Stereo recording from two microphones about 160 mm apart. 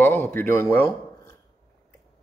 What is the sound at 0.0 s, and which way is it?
Speech, 10° left (ahead or behind).